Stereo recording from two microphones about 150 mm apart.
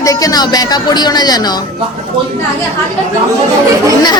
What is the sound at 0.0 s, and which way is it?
Speech, 25° left (ahead or behind).